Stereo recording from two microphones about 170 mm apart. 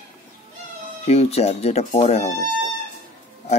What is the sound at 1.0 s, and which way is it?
Speech, 35° left (ahead or behind).